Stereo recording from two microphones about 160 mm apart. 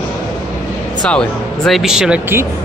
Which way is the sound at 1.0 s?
5° left (ahead or behind).